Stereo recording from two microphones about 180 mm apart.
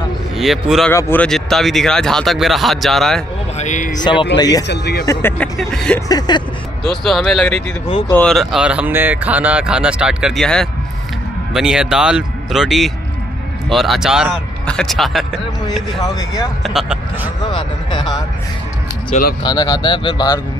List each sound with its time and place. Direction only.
0.4 s speech: centre (ahead or behind)
0.8 s speech: 10° left (ahead or behind)
3.5 s speech: 40° left (ahead or behind)
4.0 s speech: 25° left (ahead or behind)
4.6 s speech: 65° left (ahead or behind)
5.0 s speech: 15° left (ahead or behind)
5.6 s speech: 5° left (ahead or behind)
5.9 s speech: 20° left (ahead or behind)
6.8 s speech: centre (ahead or behind)
17.5 s speech: 25° left (ahead or behind)
19.4 s speech: 25° left (ahead or behind)